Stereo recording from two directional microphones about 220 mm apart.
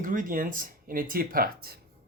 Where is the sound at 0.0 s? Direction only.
35° right (ahead or behind).